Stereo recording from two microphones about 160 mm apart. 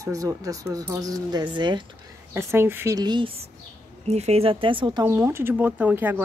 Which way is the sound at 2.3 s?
15° right (ahead or behind).